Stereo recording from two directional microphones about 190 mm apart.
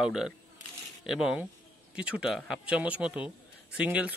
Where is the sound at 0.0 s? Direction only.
5° right (ahead or behind).